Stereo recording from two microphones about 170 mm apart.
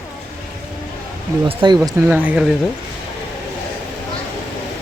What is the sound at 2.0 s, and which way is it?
Speech, 10° right (ahead or behind).